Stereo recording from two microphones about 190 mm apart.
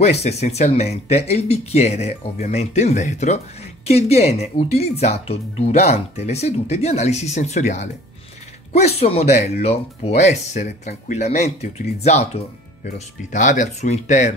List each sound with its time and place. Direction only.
0.0 s speech: 35° left (ahead or behind)